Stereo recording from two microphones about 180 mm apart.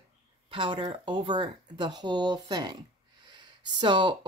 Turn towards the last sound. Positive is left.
turn(degrees=-25)  # may be behind; listen again after turning